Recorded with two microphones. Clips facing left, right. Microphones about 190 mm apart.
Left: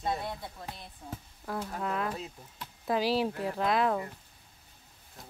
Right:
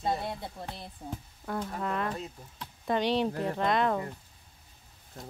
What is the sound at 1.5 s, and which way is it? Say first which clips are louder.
Speech: right 1 dB; centre (ahead or behind).